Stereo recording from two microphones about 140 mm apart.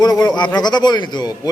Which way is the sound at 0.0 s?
30° left (ahead or behind).